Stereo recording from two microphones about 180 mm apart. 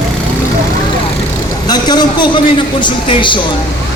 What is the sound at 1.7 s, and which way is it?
A man's voice, 25° left (ahead or behind).